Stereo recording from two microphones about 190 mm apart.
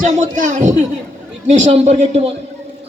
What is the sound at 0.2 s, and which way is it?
A man's voice, 40° right (ahead or behind).